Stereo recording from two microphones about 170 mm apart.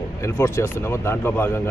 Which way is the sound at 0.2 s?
15° left (ahead or behind).